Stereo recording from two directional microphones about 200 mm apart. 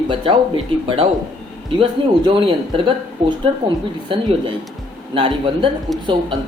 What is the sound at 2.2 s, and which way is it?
Speech, 25° right (ahead or behind).